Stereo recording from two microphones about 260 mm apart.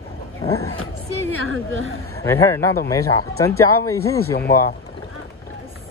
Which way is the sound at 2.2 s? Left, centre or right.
Centre.